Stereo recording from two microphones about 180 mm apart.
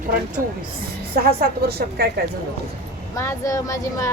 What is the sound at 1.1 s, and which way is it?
A woman's voice, 55° right (ahead or behind).